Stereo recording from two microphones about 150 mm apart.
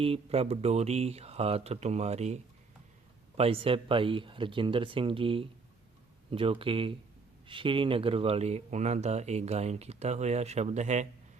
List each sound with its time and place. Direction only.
0.0 s speech: 40° right (ahead or behind)